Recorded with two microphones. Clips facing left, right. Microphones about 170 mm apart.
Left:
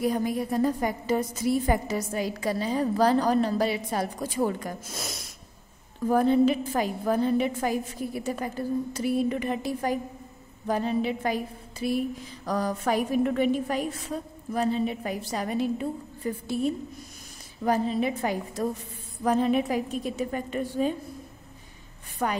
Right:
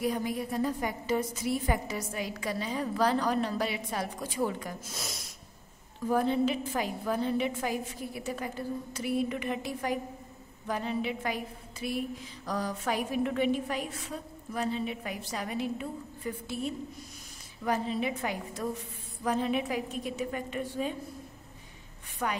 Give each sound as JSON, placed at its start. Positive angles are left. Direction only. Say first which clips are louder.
{"t": 0.0, "sound": "a woman's voice", "louder": "left 5 dB", "side_deg": 45}
{"t": 22.2, "sound": "a woman's voice", "louder": "left 4 dB", "side_deg": 45}